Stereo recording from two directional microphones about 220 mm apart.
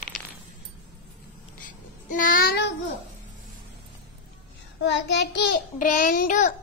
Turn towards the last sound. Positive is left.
turn(degrees=35)  # may be behind; listen again after turning